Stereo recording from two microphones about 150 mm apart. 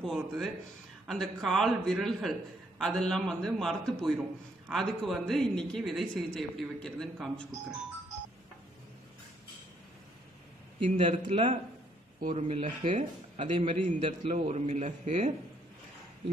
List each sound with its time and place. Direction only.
0.0 s speech: centre (ahead or behind)
10.8 s a man's voice: 40° right (ahead or behind)
12.2 s a man's voice: 60° right (ahead or behind)